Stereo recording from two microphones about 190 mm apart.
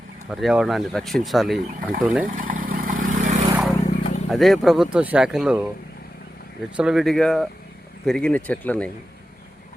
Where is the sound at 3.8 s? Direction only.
40° left (ahead or behind).